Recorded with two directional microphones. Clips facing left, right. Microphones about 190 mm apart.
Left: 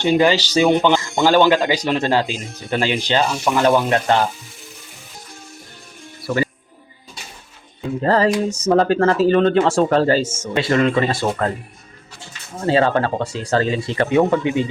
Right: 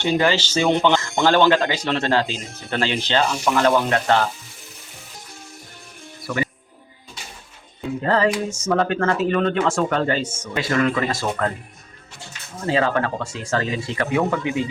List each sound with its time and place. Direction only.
0.0 s speech: 15° left (ahead or behind)
6.2 s music: 30° left (ahead or behind)
8.0 s speech: 40° left (ahead or behind)
10.5 s speech: 25° left (ahead or behind)
12.5 s speech: 30° left (ahead or behind)